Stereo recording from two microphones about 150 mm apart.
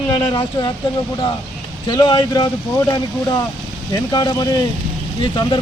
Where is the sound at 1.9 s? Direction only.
30° left (ahead or behind).